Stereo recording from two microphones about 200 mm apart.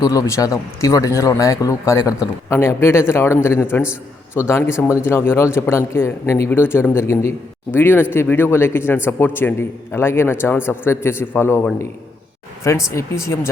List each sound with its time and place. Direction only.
0.0 s a man's voice: 15° left (ahead or behind)